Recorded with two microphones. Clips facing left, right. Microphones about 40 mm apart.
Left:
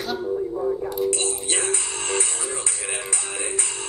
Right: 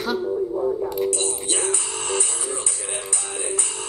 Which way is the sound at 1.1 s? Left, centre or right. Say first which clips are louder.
Even; left.